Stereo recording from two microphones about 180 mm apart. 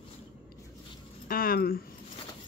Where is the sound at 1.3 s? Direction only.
55° left (ahead or behind).